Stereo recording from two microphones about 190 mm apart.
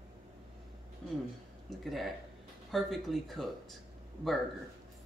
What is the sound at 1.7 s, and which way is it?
Speech, centre (ahead or behind).